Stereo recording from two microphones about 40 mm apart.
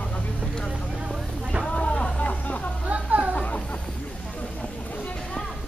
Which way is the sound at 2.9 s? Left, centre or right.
Right.